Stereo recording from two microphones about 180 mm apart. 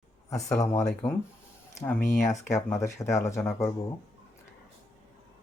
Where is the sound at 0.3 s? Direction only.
20° left (ahead or behind).